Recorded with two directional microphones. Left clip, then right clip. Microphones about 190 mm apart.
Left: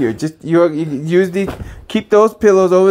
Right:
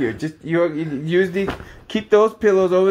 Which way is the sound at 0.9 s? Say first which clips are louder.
Left 4 dB; 35° left (ahead or behind).